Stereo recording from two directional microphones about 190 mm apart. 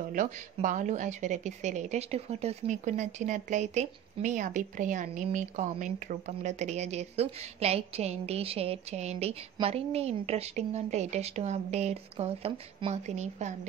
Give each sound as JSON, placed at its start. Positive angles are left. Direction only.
{"t": 0.1, "sound": "a woman's voice", "side_deg": -45}